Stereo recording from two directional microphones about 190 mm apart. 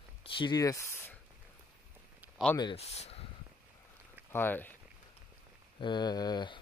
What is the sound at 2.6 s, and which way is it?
Speech, 30° left (ahead or behind).